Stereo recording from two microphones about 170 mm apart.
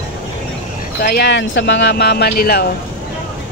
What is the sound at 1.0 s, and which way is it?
Speech, 70° left (ahead or behind).